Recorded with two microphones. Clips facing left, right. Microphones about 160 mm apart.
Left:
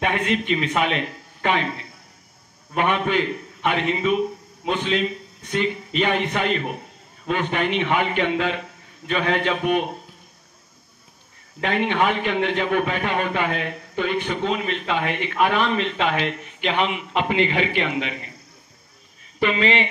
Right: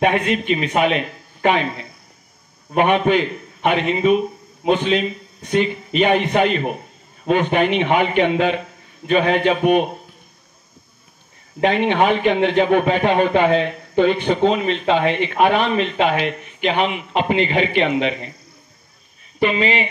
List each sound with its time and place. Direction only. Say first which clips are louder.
0.3 s speech: right 3 dB; 15° right (ahead or behind)
2.7 s a man's voice: right 6 dB; 20° right (ahead or behind)
11.6 s a man's voice: right 5 dB; 20° right (ahead or behind)